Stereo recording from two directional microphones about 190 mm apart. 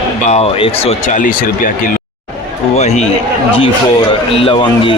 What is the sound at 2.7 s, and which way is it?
Speech, 35° left (ahead or behind).